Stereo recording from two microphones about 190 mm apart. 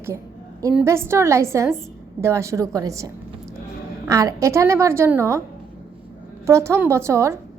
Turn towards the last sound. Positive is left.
turn(degrees=-15)  # may be behind; listen again after turning